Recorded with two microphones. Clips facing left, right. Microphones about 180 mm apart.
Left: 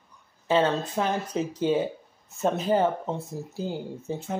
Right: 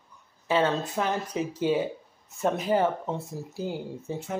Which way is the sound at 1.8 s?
25° left (ahead or behind).